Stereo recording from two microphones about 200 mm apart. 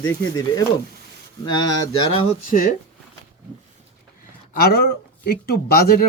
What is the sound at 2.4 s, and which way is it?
Speech, 45° left (ahead or behind).